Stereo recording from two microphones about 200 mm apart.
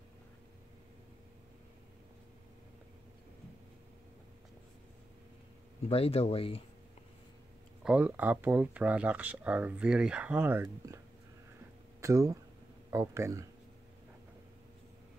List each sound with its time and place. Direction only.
5.9 s speech: 30° left (ahead or behind)
7.8 s speech: 5° right (ahead or behind)
12.0 s speech: 15° right (ahead or behind)